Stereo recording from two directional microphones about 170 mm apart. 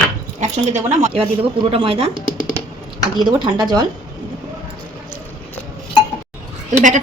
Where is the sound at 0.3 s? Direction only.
45° right (ahead or behind).